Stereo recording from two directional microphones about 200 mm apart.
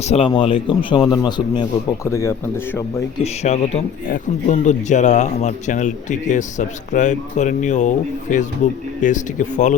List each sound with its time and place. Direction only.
0.0 s a man's voice: 30° left (ahead or behind); by 2.3 s 15° left (ahead or behind)
3.4 s speech: 35° left (ahead or behind)